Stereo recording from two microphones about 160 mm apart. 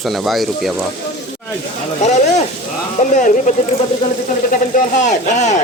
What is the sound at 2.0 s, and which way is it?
Speech, 50° left (ahead or behind).